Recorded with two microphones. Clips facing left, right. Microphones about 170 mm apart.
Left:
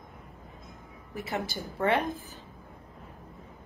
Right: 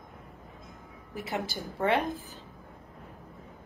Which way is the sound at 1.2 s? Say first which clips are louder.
Even; 15° right (ahead or behind).